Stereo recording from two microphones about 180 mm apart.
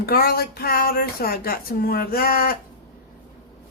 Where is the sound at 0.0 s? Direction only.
60° left (ahead or behind).